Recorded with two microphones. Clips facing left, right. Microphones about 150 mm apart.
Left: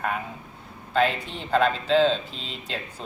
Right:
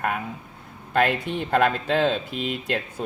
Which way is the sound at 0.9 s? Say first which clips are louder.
Right 2 dB; 60° right (ahead or behind).